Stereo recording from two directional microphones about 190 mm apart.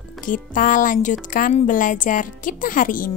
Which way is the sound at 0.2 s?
45° left (ahead or behind).